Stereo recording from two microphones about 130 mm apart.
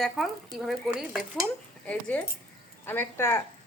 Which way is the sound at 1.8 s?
10° left (ahead or behind).